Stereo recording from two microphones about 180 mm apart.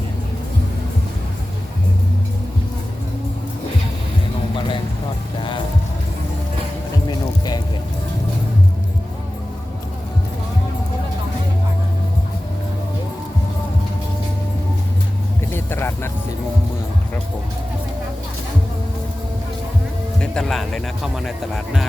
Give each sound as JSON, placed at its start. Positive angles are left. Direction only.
{"t": 5.4, "sound": "music", "side_deg": 25}
{"t": 7.1, "sound": "music", "side_deg": 20}
{"t": 15.5, "sound": "vehicle", "side_deg": 15}
{"t": 20.2, "sound": "music", "side_deg": 5}